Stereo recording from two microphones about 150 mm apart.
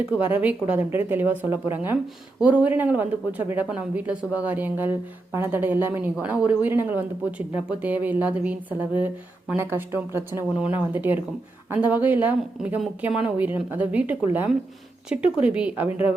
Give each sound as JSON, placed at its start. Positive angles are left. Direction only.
{"t": 0.1, "sound": "speech", "side_deg": -10}
{"t": 15.9, "sound": "speech", "side_deg": 40}